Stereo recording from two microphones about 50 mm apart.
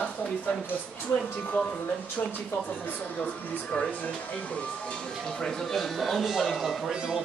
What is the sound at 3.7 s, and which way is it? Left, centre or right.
Speech, left.